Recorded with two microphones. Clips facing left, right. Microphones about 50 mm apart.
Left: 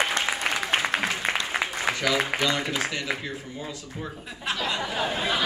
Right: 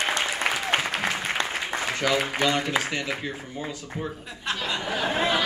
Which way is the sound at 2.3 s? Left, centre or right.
Right.